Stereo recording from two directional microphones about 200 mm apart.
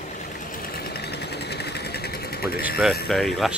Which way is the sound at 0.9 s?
55° left (ahead or behind).